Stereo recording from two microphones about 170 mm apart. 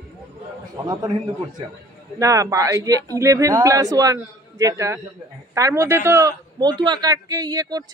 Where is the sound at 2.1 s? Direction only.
20° right (ahead or behind).